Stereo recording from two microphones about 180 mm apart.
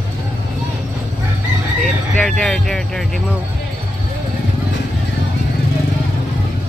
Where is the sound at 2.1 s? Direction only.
5° left (ahead or behind).